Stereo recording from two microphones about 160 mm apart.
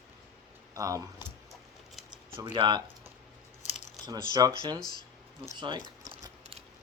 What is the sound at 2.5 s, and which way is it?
Speech, 30° right (ahead or behind).